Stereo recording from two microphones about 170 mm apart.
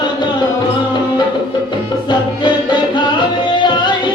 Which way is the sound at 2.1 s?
25° left (ahead or behind).